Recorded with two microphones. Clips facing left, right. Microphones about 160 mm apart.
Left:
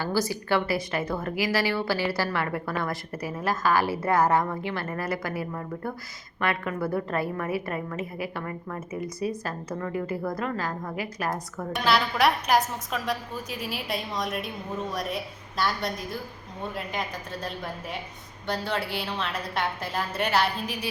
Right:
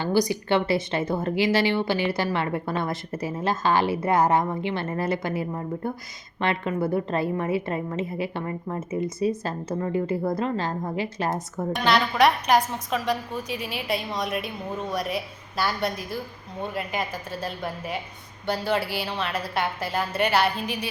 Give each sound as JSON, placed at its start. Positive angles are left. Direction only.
{"t": 0.0, "sound": "speech", "side_deg": -20}
{"t": 11.7, "sound": "a woman's voice", "side_deg": 0}